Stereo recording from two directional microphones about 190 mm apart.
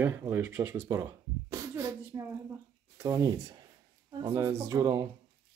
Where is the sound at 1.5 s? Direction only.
15° right (ahead or behind).